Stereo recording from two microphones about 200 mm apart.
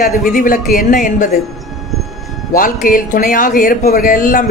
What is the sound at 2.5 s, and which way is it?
Speech, 45° left (ahead or behind).